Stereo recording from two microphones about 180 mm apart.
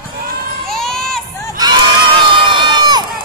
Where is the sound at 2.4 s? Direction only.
25° right (ahead or behind).